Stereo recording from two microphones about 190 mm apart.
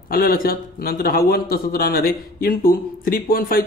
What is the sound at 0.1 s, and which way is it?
Speech, 50° left (ahead or behind).